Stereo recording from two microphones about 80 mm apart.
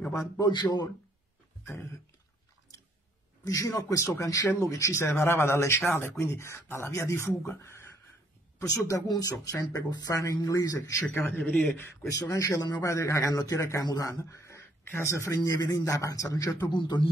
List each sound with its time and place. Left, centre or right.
0.5 s a man's voice: left
3.4 s a man's voice: left
8.6 s a man's voice: left
11.1 s a man's voice: left
12.1 s a man's voice: left
12.8 s speech: left
15.4 s a man's voice: left
16.6 s a man's voice: left